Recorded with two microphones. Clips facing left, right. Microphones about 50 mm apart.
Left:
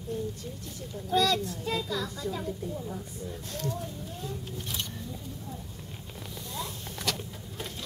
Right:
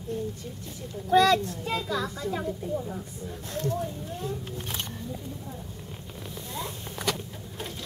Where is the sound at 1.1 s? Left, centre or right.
Right.